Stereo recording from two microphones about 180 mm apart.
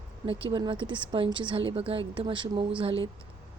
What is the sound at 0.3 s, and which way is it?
Speech, 30° right (ahead or behind).